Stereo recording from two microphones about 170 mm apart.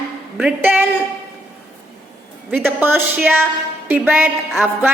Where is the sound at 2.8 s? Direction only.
10° right (ahead or behind).